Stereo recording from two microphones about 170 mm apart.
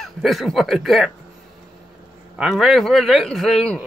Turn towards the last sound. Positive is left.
turn(degrees=0)  # may be behind; listen again after turning